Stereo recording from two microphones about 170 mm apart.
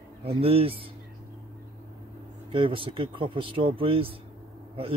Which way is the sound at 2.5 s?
30° right (ahead or behind).